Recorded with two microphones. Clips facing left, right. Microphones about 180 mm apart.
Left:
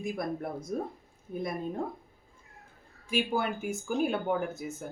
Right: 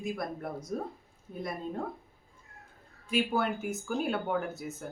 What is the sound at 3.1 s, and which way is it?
A woman's voice, 10° left (ahead or behind).